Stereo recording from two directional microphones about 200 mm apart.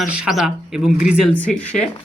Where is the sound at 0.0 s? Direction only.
5° right (ahead or behind).